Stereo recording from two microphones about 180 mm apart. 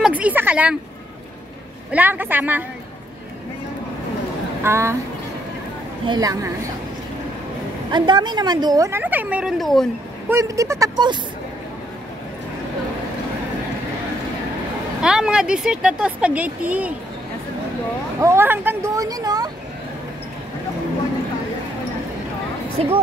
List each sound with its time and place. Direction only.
0.0 s a woman's voice: 10° right (ahead or behind)
1.9 s a woman's voice: 10° right (ahead or behind)
4.6 s a woman's voice: 15° right (ahead or behind)
6.0 s speech: 20° right (ahead or behind)
7.9 s a woman's voice: 25° right (ahead or behind); by 9.8 s centre (ahead or behind)
10.3 s speech: 20° right (ahead or behind)
15.0 s speech: 5° right (ahead or behind)
18.2 s a woman's voice: 15° right (ahead or behind)